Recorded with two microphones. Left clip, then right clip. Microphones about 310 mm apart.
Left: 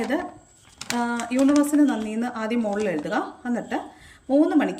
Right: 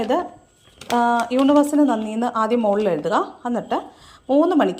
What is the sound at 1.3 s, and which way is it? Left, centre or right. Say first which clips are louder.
Speech: right 3 dB; centre.